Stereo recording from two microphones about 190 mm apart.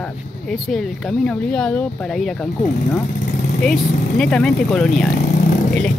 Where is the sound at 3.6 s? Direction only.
5° left (ahead or behind).